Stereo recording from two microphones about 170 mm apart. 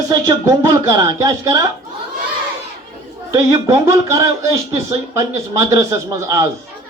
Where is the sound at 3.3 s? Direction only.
15° right (ahead or behind).